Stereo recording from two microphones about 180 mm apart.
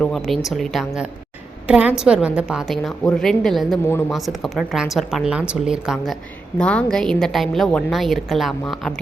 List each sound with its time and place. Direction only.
0.0 s a woman's voice: centre (ahead or behind)